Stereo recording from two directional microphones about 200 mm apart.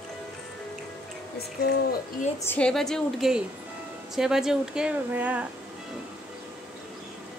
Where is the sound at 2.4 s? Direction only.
5° left (ahead or behind).